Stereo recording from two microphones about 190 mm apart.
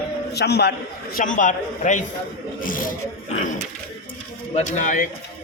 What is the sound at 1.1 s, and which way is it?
Speech, 45° left (ahead or behind).